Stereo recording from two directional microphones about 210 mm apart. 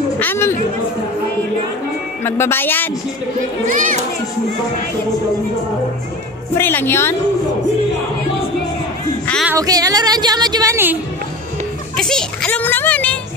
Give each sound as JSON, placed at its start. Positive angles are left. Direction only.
{"t": 0.2, "sound": "chatter", "side_deg": 10}
{"t": 2.2, "sound": "a child's voice", "side_deg": 10}
{"t": 3.6, "sound": "speech", "side_deg": -35}
{"t": 6.5, "sound": "a child's voice", "side_deg": 10}
{"t": 9.5, "sound": "speech", "side_deg": -15}
{"t": 12.0, "sound": "a child's voice", "side_deg": 5}